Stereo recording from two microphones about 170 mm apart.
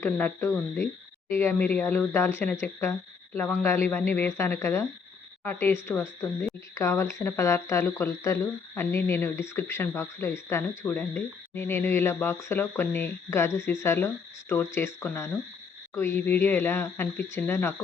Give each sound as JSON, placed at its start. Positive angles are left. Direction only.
{"t": 0.0, "sound": "speech", "side_deg": 10}